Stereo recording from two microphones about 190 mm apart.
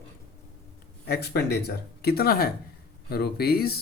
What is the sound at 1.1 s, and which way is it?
Speech, 60° left (ahead or behind).